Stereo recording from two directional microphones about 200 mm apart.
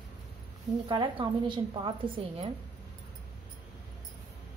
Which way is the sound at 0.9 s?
25° right (ahead or behind).